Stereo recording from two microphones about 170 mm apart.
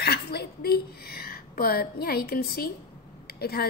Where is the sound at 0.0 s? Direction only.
70° left (ahead or behind).